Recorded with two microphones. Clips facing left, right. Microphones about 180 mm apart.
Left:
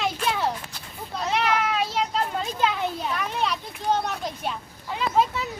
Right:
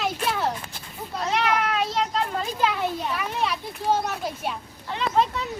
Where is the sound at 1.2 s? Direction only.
Centre (ahead or behind).